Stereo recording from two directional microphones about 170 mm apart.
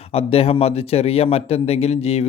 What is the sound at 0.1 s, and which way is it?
Speech, 35° left (ahead or behind).